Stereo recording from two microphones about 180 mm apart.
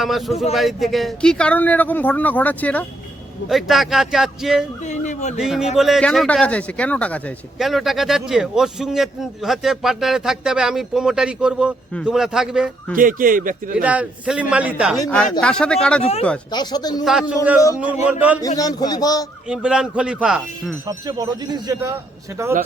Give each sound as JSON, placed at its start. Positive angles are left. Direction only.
{"t": 0.0, "sound": "a man's voice", "side_deg": 0}
{"t": 4.9, "sound": "speech", "side_deg": 40}
{"t": 5.4, "sound": "a man's voice", "side_deg": -5}
{"t": 12.9, "sound": "speech", "side_deg": -50}
{"t": 13.8, "sound": "a man's voice", "side_deg": -5}
{"t": 15.4, "sound": "a man's voice", "side_deg": 5}
{"t": 16.5, "sound": "a man's voice", "side_deg": 25}
{"t": 17.1, "sound": "speech", "side_deg": -5}
{"t": 18.4, "sound": "a man's voice", "side_deg": 20}
{"t": 19.5, "sound": "a man's voice", "side_deg": -5}
{"t": 20.8, "sound": "speech", "side_deg": -20}